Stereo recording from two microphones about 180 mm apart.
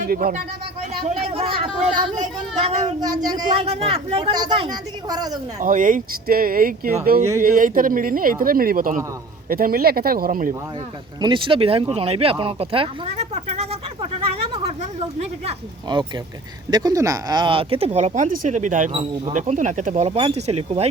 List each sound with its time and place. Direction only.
0.0 s speech: 50° right (ahead or behind)
1.3 s speech: 30° right (ahead or behind)
5.5 s speech: 45° right (ahead or behind)
11.2 s speech: 25° right (ahead or behind)
14.5 s a sound: 35° right (ahead or behind)
15.9 s speech: 25° right (ahead or behind)